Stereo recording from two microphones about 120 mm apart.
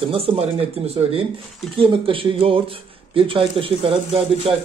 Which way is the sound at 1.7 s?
45° right (ahead or behind).